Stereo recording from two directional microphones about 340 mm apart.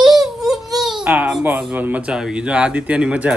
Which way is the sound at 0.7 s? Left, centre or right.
Centre.